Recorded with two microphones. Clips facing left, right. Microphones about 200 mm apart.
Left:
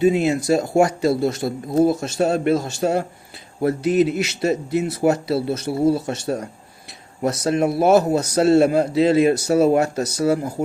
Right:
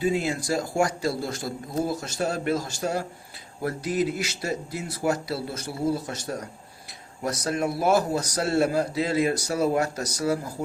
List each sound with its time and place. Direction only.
0.0 s a man's voice: 20° left (ahead or behind)
1.4 s a man's voice: 60° left (ahead or behind)
1.9 s a man's voice: 25° left (ahead or behind)